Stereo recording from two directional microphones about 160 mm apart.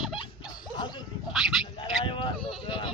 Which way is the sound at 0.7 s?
25° left (ahead or behind).